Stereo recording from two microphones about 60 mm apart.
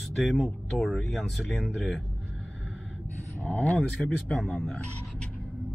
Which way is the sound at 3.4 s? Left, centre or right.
Left.